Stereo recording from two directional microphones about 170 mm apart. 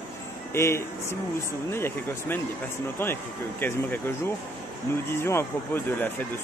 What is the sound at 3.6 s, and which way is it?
Speech, 10° left (ahead or behind).